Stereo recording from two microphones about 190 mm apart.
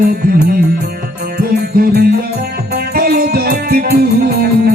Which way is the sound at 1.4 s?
50° right (ahead or behind).